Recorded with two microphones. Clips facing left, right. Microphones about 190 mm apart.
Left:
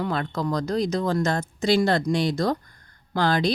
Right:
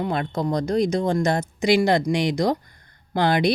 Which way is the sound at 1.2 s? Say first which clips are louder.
Right 3 dB; 15° right (ahead or behind).